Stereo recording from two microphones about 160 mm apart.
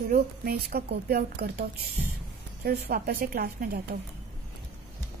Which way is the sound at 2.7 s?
70° right (ahead or behind).